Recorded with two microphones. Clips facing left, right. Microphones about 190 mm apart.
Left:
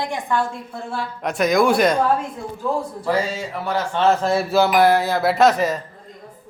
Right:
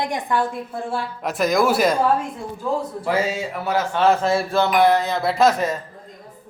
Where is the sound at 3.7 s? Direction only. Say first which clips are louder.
Even; 5° right (ahead or behind).